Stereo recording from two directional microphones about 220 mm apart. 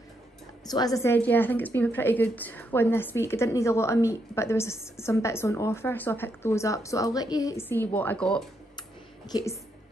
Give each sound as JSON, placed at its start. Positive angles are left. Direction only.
{"t": 0.7, "sound": "a woman's voice", "side_deg": 15}